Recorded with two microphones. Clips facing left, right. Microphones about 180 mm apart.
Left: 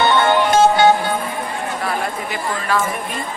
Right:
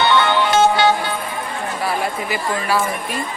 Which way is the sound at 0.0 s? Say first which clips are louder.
Left 1 dB; 45° left (ahead or behind).